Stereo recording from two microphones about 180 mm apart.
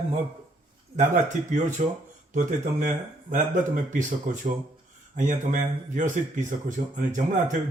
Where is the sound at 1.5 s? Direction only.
45° right (ahead or behind).